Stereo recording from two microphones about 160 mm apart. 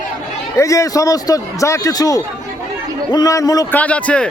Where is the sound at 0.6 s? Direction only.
20° left (ahead or behind).